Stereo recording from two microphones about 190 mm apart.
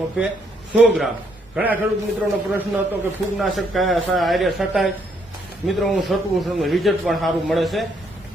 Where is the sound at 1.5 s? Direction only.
10° right (ahead or behind).